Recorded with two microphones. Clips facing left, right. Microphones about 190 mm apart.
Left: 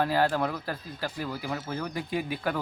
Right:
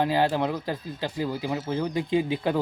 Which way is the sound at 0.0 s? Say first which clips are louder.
Right 2 dB; 20° right (ahead or behind).